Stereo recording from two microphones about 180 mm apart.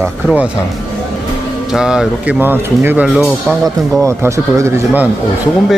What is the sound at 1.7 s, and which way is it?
Speech, 5° right (ahead or behind).